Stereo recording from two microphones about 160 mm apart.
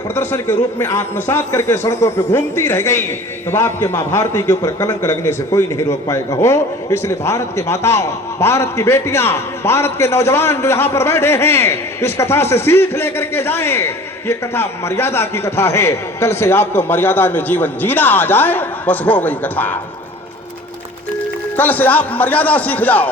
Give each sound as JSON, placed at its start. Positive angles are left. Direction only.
{"t": 0.1, "sound": "a man's voice", "side_deg": 15}
{"t": 21.5, "sound": "a man's voice", "side_deg": 10}